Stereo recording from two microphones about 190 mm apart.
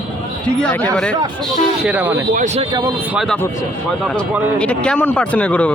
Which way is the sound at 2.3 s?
35° right (ahead or behind).